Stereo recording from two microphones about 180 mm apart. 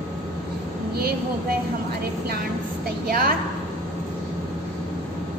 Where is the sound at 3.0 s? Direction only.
55° right (ahead or behind).